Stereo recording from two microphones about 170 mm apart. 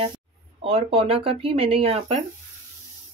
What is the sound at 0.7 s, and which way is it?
Speech, 35° right (ahead or behind).